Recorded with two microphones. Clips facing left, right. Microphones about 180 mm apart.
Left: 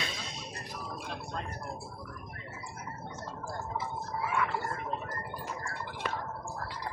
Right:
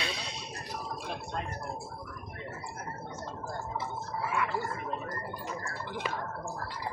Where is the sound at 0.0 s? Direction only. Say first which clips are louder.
Right 2 dB; 45° left (ahead or behind).